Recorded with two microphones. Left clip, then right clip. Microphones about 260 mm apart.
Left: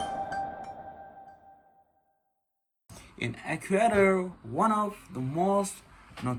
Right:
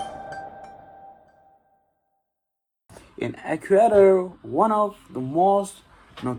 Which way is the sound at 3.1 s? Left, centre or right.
Centre.